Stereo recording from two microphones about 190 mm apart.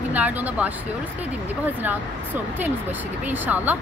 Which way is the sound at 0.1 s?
10° right (ahead or behind).